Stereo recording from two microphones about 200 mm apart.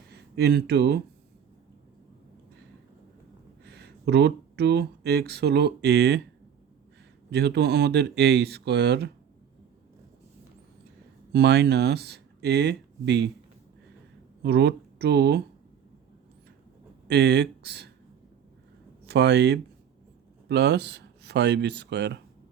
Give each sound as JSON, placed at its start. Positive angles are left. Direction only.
{"t": 0.1, "sound": "speech", "side_deg": -55}
{"t": 3.6, "sound": "speech", "side_deg": -55}
{"t": 7.3, "sound": "speech", "side_deg": -55}
{"t": 11.3, "sound": "speech", "side_deg": -55}
{"t": 14.4, "sound": "speech", "side_deg": -60}
{"t": 17.1, "sound": "speech", "side_deg": -55}
{"t": 19.0, "sound": "speech", "side_deg": -55}